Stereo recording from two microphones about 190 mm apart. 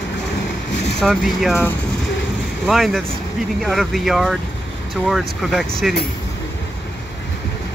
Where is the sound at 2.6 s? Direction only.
Centre (ahead or behind).